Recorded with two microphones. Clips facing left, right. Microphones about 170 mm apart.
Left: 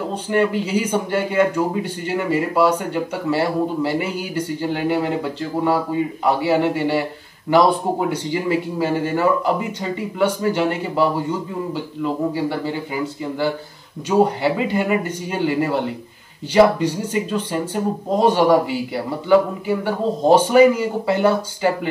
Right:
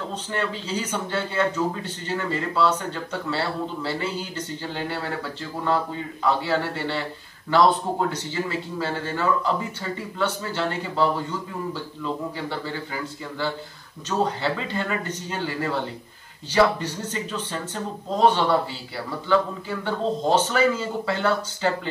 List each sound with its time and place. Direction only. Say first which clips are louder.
0.0 s a man's voice: left 9 dB; 10° left (ahead or behind)